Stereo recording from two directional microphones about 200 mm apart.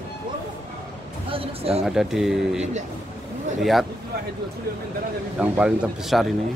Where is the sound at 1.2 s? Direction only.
30° right (ahead or behind).